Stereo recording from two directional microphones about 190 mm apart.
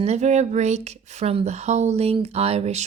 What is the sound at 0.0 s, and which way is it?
Speech, 35° right (ahead or behind).